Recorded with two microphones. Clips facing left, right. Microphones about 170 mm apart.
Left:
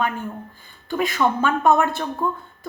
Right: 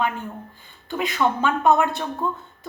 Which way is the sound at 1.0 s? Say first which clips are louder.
Left 1 dB; 20° right (ahead or behind).